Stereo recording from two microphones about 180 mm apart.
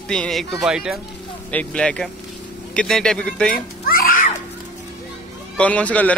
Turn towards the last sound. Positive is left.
turn(degrees=10)  # may be behind; listen again after turning